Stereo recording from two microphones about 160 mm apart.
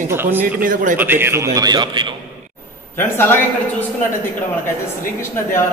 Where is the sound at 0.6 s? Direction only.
55° right (ahead or behind).